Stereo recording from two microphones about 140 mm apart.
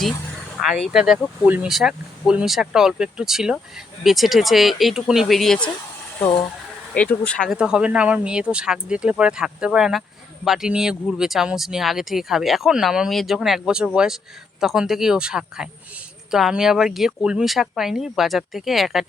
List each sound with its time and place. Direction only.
0.6 s speech: centre (ahead or behind)
6.2 s speech: 25° left (ahead or behind)
6.9 s speech: 10° left (ahead or behind)
7.5 s speech: 5° right (ahead or behind)